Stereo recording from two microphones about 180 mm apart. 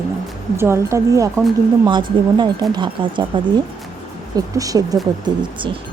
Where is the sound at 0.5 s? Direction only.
15° right (ahead or behind).